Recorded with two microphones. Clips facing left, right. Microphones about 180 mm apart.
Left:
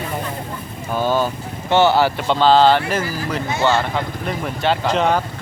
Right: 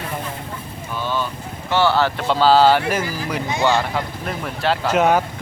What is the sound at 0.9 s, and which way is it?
Vehicle, 45° left (ahead or behind).